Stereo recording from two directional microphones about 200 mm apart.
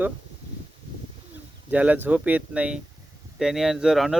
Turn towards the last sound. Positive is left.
turn(degrees=0)  # may be behind; listen again after turning